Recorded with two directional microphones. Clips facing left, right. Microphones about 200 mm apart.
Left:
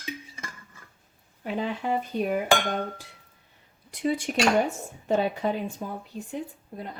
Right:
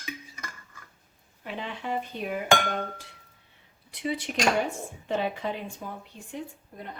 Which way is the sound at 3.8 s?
45° left (ahead or behind).